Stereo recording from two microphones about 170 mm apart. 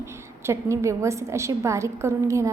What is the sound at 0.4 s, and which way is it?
A woman's voice, 15° right (ahead or behind).